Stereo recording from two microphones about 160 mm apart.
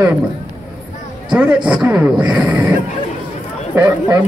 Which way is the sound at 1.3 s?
5° right (ahead or behind).